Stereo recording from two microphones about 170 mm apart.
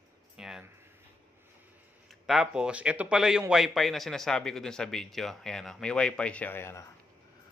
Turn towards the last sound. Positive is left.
turn(degrees=15)  # may be behind; listen again after turning